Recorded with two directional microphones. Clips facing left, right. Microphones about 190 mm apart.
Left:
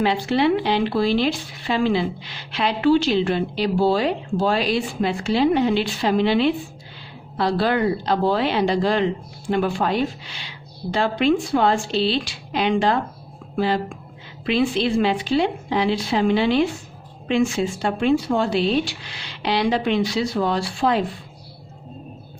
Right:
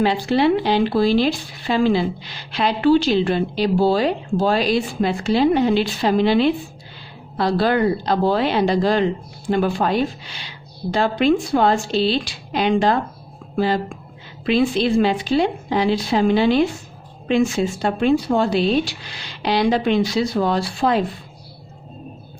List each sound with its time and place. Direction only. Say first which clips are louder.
0.0 s speech: right 2 dB; 40° right (ahead or behind)
14.4 s speech: right 2 dB; 40° right (ahead or behind)